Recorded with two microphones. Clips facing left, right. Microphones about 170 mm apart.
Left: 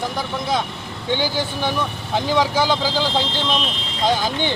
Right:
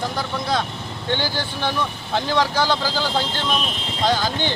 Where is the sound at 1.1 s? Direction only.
15° left (ahead or behind).